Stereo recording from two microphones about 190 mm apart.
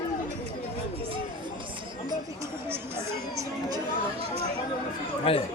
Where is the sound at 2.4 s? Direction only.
10° right (ahead or behind).